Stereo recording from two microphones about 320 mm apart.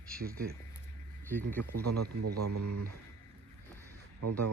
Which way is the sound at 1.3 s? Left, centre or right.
Centre.